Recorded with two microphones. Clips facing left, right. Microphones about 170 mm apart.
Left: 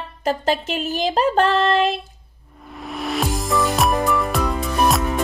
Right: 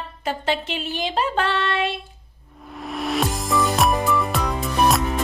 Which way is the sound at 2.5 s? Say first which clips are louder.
Right 1 dB; centre (ahead or behind).